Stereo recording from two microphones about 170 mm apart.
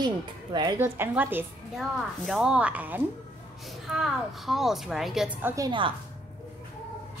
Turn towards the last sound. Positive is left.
turn(degrees=-25)  # may be behind; listen again after turning